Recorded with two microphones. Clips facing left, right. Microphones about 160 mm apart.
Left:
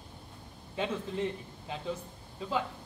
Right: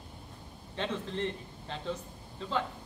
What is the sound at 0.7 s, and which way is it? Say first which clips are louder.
A man's voice: left 1 dB; 5° left (ahead or behind).